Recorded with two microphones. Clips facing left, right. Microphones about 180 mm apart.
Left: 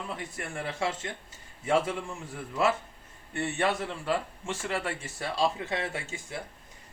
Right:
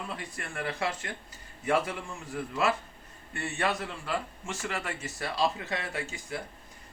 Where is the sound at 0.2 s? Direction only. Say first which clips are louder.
Left 1 dB; 25° left (ahead or behind).